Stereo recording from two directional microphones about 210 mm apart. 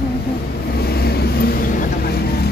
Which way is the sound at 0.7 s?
50° left (ahead or behind).